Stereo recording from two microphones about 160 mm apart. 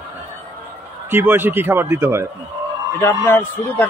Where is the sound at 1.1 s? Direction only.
15° right (ahead or behind).